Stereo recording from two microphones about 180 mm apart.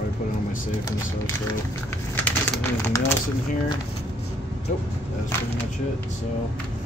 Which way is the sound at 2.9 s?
15° left (ahead or behind).